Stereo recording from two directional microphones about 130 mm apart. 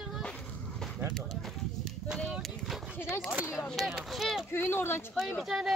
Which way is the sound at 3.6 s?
Centre (ahead or behind).